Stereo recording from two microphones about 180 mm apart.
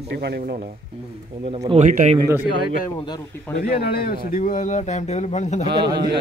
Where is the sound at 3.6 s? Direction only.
55° left (ahead or behind); by 5.6 s 40° left (ahead or behind).